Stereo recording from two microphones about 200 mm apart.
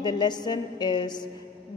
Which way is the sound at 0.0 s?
20° left (ahead or behind).